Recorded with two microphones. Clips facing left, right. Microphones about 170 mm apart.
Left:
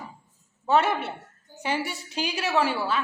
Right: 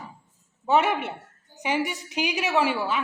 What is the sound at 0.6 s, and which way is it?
A woman's voice, 15° right (ahead or behind).